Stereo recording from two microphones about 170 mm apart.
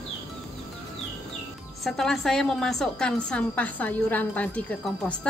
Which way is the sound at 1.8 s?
Centre (ahead or behind).